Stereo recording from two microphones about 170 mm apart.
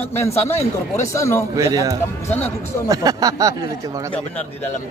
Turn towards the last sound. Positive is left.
turn(degrees=10)  # may be behind; listen again after turning